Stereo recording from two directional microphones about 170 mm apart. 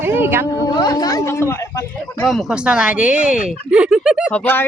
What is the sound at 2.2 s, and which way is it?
Speech, centre (ahead or behind).